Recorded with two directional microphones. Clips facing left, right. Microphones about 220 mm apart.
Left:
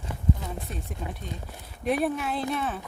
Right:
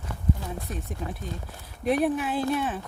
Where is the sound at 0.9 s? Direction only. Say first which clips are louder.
Right 2 dB; centre (ahead or behind).